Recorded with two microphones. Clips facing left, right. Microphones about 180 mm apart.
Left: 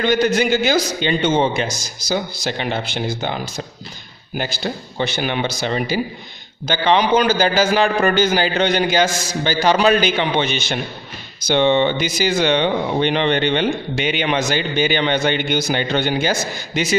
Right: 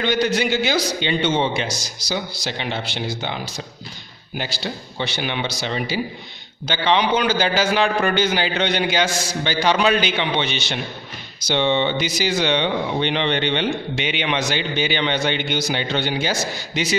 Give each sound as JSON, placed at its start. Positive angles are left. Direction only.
{"t": 0.0, "sound": "speech", "side_deg": 50}